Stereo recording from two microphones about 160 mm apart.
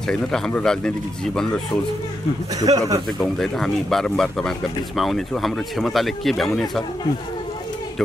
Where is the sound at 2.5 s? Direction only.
20° right (ahead or behind).